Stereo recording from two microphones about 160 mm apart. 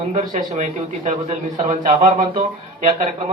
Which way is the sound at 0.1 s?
50° right (ahead or behind).